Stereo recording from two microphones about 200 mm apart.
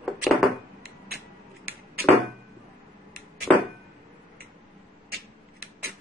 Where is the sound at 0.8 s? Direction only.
50° right (ahead or behind).